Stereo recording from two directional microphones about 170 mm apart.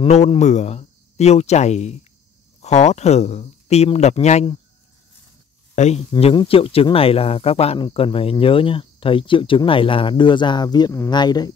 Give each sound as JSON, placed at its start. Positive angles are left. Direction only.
{"t": 0.0, "sound": "speech", "side_deg": 35}
{"t": 5.8, "sound": "speech", "side_deg": 40}